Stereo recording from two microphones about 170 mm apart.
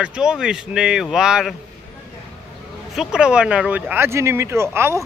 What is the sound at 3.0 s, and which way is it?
Speech, 5° right (ahead or behind).